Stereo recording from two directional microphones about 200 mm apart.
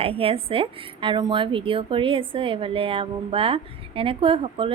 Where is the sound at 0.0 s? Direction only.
30° right (ahead or behind).